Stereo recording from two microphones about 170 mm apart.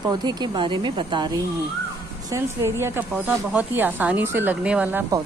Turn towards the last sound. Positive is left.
turn(degrees=-10)  # may be behind; listen again after turning